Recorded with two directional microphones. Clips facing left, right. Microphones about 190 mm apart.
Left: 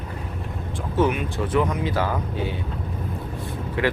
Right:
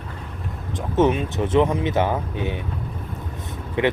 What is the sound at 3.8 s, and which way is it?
Speech, 20° right (ahead or behind).